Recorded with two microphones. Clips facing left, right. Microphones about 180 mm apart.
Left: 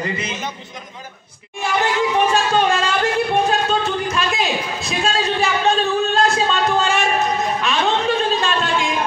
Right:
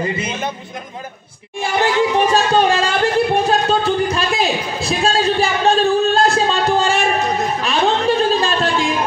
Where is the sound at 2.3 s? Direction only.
35° right (ahead or behind).